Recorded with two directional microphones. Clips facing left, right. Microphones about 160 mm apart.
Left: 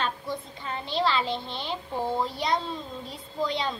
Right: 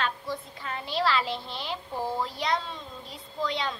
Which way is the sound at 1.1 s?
5° right (ahead or behind).